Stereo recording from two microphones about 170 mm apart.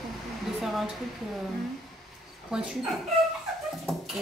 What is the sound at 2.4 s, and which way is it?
Speech, 5° right (ahead or behind).